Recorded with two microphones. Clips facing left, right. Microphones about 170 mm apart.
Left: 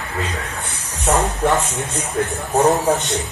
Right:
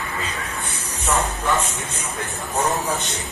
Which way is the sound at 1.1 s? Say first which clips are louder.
Left 5 dB; 35° left (ahead or behind).